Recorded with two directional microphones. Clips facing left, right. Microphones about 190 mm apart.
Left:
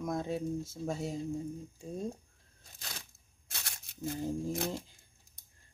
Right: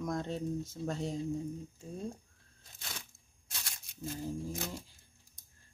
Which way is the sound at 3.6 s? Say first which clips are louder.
Left 4 dB; 60° left (ahead or behind).